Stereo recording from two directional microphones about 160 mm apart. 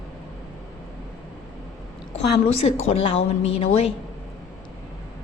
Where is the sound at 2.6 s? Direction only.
40° left (ahead or behind).